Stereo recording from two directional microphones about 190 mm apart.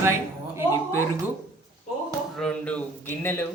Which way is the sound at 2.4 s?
5° left (ahead or behind).